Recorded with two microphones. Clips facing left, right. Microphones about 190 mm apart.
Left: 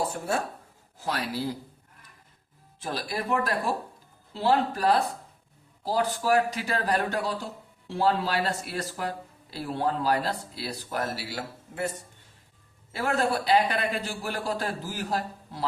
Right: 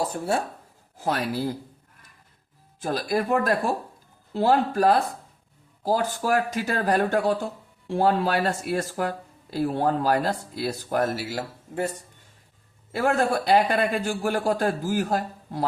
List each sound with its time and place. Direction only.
0.9 s speech: 50° right (ahead or behind)
2.8 s speech: 45° right (ahead or behind)
12.9 s speech: 50° right (ahead or behind)